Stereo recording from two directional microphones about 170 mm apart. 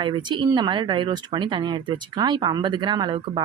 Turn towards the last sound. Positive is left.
turn(degrees=-25)  # may be behind; listen again after turning